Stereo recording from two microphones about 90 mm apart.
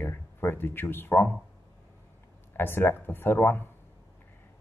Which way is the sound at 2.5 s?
25° left (ahead or behind).